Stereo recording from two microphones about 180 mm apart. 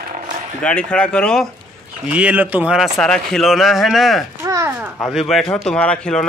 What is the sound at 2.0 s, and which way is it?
Speech, 5° right (ahead or behind).